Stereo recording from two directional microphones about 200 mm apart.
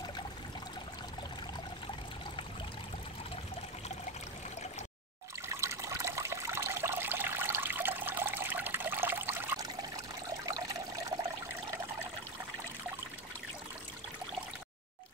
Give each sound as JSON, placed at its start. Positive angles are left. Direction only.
{"t": 5.5, "sound": "water", "side_deg": -15}
{"t": 10.4, "sound": "trickle", "side_deg": -15}